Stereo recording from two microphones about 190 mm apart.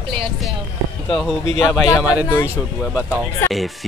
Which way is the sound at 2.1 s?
15° left (ahead or behind).